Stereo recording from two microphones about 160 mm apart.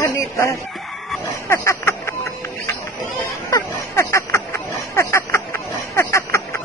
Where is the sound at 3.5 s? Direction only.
15° left (ahead or behind).